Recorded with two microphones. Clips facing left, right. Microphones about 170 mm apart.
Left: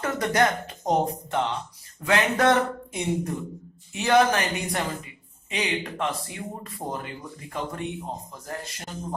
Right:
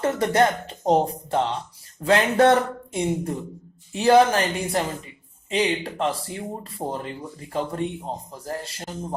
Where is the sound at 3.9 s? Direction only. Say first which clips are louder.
Right 4 dB; 30° right (ahead or behind).